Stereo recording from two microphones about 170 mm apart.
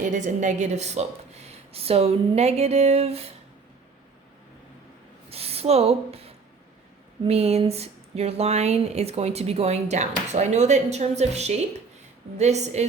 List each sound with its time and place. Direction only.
0.0 s a woman's voice: 45° right (ahead or behind)
5.3 s speech: 35° right (ahead or behind)
7.3 s speech: 40° right (ahead or behind)